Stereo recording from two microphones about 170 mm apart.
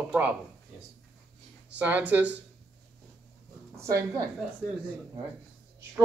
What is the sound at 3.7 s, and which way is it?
Speech, 20° right (ahead or behind).